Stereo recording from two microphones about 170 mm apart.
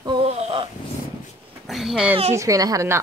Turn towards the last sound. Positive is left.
turn(degrees=-15)  # may be behind; listen again after turning